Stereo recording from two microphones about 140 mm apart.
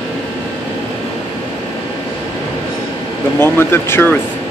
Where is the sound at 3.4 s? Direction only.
15° left (ahead or behind).